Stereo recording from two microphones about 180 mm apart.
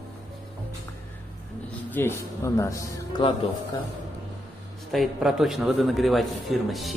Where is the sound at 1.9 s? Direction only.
15° left (ahead or behind).